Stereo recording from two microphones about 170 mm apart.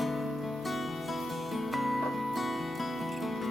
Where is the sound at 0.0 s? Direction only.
Centre (ahead or behind).